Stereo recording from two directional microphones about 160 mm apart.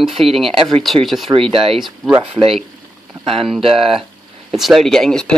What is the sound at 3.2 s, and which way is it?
Speech, 35° right (ahead or behind).